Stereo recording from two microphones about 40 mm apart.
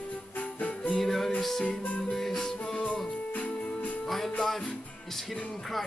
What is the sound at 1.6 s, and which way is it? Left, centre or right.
Music, left.